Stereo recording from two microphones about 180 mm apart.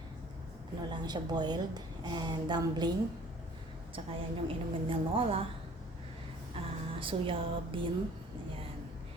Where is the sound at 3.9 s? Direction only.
30° right (ahead or behind).